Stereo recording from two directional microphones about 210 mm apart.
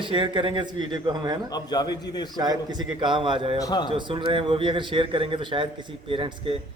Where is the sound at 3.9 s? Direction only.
25° right (ahead or behind).